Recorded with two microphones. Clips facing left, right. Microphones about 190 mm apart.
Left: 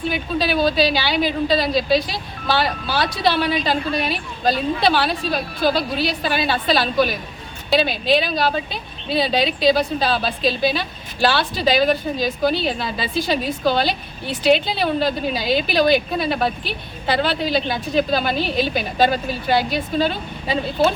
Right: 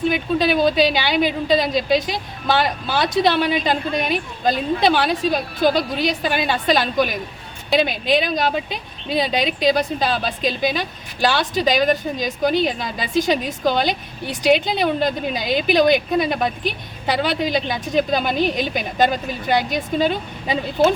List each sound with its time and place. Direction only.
0.1 s a woman's voice: 20° right (ahead or behind)